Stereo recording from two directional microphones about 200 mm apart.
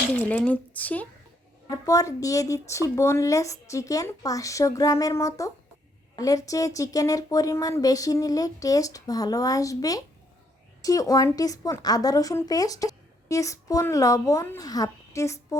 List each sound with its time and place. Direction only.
0.2 s speech: 5° left (ahead or behind)